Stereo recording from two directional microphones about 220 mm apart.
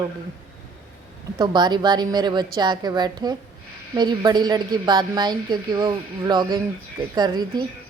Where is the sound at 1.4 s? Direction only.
20° right (ahead or behind).